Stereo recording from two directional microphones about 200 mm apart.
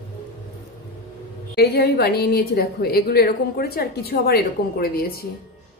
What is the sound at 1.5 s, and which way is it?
A woman's voice, 55° left (ahead or behind).